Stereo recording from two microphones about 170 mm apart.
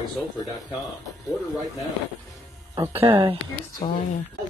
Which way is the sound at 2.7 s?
15° right (ahead or behind).